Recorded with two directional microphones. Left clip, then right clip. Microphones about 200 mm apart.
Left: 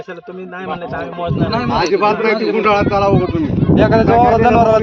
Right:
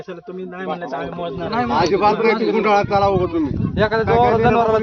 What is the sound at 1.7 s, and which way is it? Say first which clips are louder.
A man's voice: left 1 dB; 5° right (ahead or behind).